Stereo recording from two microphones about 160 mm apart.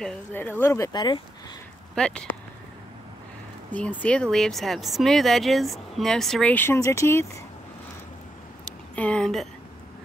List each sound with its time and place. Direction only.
0.0 s speech: 15° left (ahead or behind)
2.0 s speech: 5° left (ahead or behind)
3.7 s speech: 10° left (ahead or behind)
8.6 s a woman's voice: 5° left (ahead or behind)